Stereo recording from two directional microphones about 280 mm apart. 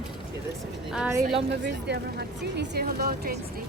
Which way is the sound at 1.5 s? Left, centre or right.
Right.